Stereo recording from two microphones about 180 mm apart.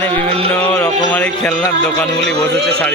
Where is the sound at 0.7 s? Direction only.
10° left (ahead or behind).